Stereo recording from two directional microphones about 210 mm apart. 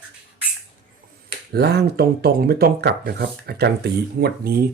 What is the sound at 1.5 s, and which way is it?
Speech, 50° right (ahead or behind).